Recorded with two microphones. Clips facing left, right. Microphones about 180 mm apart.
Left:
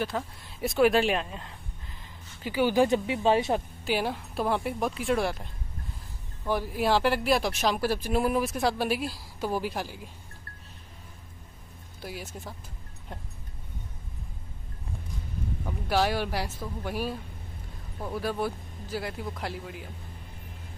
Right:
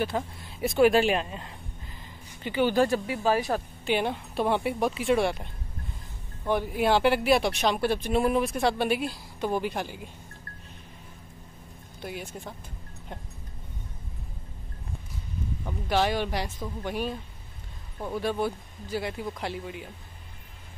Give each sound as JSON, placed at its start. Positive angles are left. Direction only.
{"t": 0.0, "sound": "speech", "side_deg": 0}
{"t": 3.8, "sound": "speech", "side_deg": 5}
{"t": 12.0, "sound": "speech", "side_deg": 5}
{"t": 15.6, "sound": "speech", "side_deg": 5}